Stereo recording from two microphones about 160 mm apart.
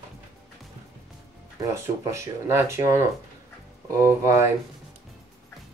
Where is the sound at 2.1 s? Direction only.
15° right (ahead or behind).